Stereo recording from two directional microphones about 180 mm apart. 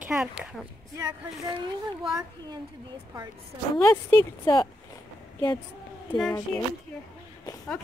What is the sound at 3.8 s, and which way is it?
Speech, 15° left (ahead or behind).